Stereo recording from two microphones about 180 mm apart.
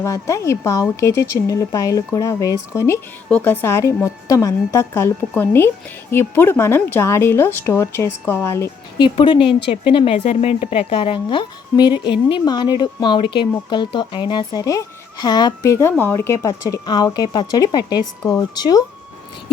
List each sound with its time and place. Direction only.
0.0 s a woman's voice: 15° left (ahead or behind)
9.0 s speech: 25° left (ahead or behind)